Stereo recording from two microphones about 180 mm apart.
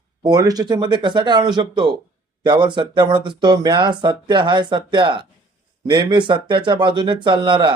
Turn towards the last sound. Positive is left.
turn(degrees=-25)  # may be behind; listen again after turning